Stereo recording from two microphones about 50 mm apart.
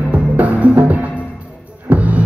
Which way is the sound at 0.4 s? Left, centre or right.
Right.